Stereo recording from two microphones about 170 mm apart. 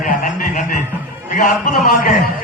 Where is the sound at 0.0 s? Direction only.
50° left (ahead or behind).